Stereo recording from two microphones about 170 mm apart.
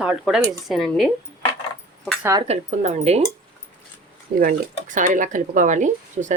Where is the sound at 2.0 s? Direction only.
Centre (ahead or behind).